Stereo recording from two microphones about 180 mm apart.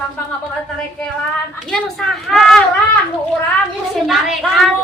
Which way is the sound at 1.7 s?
5° left (ahead or behind).